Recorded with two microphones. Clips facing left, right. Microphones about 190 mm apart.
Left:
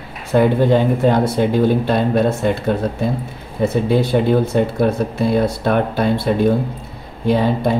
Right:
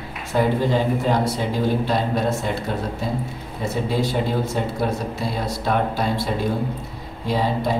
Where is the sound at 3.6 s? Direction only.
60° left (ahead or behind).